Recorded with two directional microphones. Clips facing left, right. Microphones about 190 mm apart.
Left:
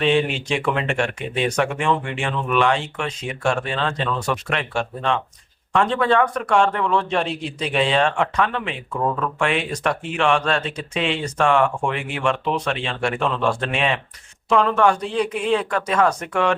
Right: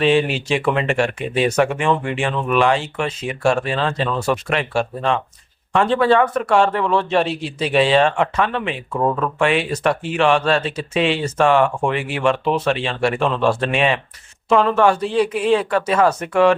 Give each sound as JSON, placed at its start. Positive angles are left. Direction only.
{"t": 0.0, "sound": "speech", "side_deg": -5}
{"t": 9.0, "sound": "speech", "side_deg": -15}
{"t": 9.4, "sound": "speech", "side_deg": -5}